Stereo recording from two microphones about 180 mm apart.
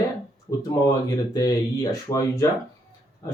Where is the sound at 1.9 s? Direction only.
15° left (ahead or behind).